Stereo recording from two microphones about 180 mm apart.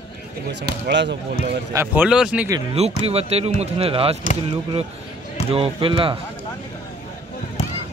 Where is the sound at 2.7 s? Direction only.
35° right (ahead or behind).